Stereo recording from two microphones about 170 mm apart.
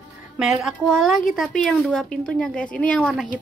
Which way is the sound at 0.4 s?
Centre (ahead or behind).